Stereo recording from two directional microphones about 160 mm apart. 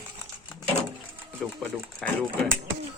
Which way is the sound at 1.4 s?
5° left (ahead or behind).